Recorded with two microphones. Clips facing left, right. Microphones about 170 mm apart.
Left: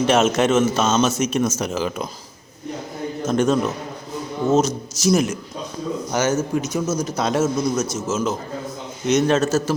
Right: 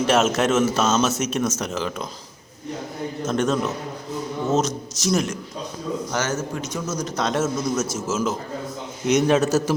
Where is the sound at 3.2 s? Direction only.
Centre (ahead or behind).